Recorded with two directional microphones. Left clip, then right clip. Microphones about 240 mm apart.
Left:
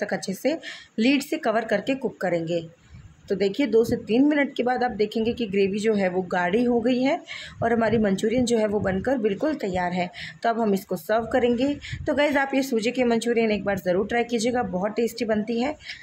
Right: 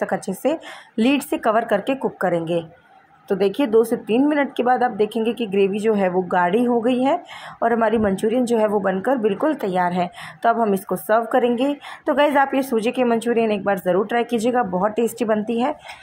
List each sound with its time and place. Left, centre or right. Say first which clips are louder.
0.0 s speech: right 4 dB; centre